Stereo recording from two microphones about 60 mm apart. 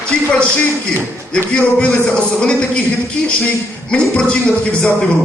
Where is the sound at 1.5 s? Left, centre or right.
Centre.